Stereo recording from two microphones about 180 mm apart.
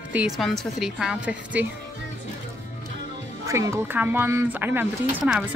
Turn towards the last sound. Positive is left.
turn(degrees=-5)  # may be behind; listen again after turning